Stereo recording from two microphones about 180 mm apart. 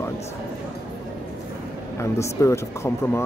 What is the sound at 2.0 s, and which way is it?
Speech, 15° left (ahead or behind).